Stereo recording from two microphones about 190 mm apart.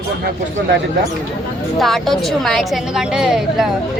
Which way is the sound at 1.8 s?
Centre (ahead or behind).